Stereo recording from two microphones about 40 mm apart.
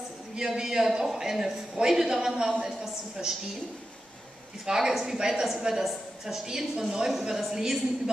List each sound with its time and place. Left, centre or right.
0.4 s a man's voice: centre
4.6 s a man's voice: centre